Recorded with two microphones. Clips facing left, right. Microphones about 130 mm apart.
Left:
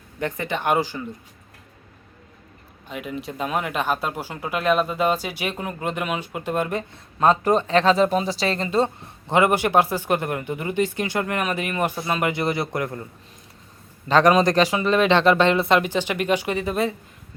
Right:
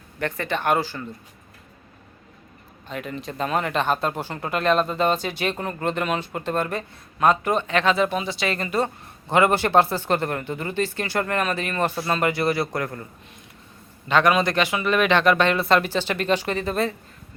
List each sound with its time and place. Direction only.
0.2 s speech: 15° left (ahead or behind)
2.9 s speech: 10° left (ahead or behind)
14.1 s speech: 35° left (ahead or behind); by 16.9 s 10° left (ahead or behind)